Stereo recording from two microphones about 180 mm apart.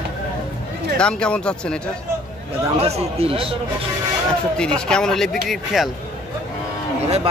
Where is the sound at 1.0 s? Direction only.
5° left (ahead or behind).